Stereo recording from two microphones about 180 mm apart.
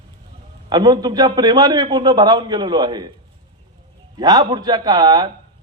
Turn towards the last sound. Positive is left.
turn(degrees=-25)  # may be behind; listen again after turning